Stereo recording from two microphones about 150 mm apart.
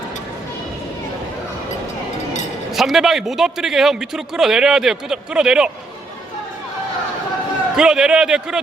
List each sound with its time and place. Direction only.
2.7 s a man's voice: centre (ahead or behind)
7.8 s a man's voice: 5° right (ahead or behind)